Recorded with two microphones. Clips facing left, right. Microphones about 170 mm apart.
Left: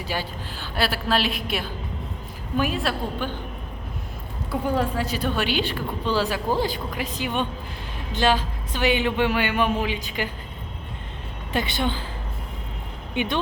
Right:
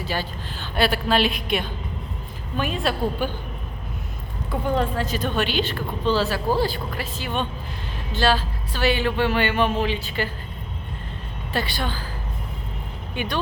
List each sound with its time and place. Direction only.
0.0 s speech: 10° left (ahead or behind)
0.8 s a woman's voice: centre (ahead or behind)
3.2 s speech: 10° right (ahead or behind)
4.6 s speech: 10° left (ahead or behind)
11.5 s a woman's voice: 20° left (ahead or behind)
13.1 s a woman's voice: 20° left (ahead or behind)